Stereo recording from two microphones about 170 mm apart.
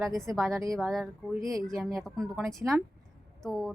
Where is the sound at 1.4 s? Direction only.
20° right (ahead or behind).